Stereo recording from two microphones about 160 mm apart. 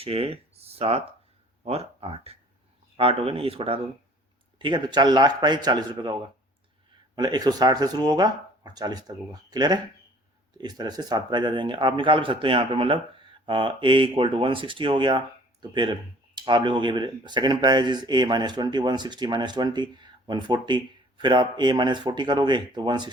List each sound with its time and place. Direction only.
0.0 s speech: 35° right (ahead or behind)
7.2 s speech: 25° right (ahead or behind)